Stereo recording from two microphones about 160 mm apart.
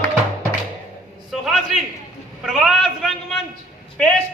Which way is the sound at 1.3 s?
Centre (ahead or behind).